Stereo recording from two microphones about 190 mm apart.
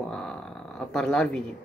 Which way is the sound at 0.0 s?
5° left (ahead or behind).